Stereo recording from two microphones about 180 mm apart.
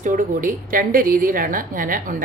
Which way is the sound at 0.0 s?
50° right (ahead or behind).